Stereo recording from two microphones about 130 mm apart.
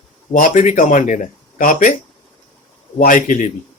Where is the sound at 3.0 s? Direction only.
90° left.